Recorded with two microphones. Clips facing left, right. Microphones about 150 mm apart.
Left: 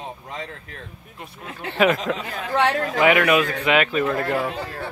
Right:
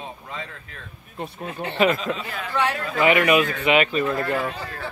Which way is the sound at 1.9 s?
75° left (ahead or behind).